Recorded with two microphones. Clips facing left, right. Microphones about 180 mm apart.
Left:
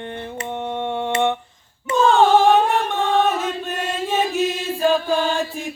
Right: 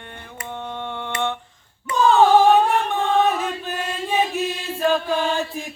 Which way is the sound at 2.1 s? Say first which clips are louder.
Right 1 dB; centre (ahead or behind).